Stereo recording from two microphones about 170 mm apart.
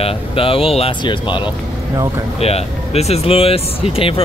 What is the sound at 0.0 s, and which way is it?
Speech, 35° left (ahead or behind).